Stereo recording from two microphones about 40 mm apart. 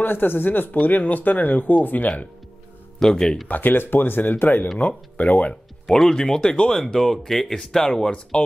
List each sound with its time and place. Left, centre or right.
0.0 s speech: left
3.0 s speech: centre
3.4 s speech: left
4.7 s speech: left
5.9 s speech: centre
6.4 s speech: left
6.7 s speech: centre